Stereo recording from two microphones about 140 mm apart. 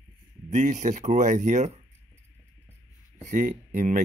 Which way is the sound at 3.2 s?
65° right (ahead or behind).